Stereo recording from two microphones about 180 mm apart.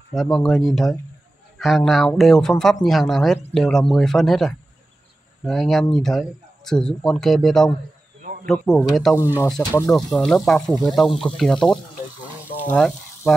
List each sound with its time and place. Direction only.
0.1 s speech: centre (ahead or behind)
8.2 s a sound: 50° right (ahead or behind)
8.5 s speech: 5° left (ahead or behind)
12.6 s frying: 5° left (ahead or behind)